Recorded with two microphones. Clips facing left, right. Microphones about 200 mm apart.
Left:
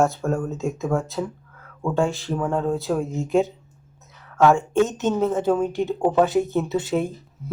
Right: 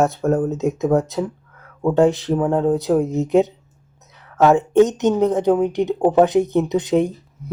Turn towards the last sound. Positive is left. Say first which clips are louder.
# right 6 dB
turn(degrees=-20)  # may be behind; listen again after turning